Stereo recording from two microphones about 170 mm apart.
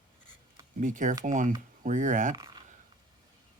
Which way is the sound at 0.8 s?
50° right (ahead or behind).